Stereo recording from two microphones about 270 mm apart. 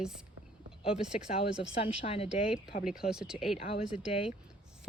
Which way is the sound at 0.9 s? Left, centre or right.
Centre.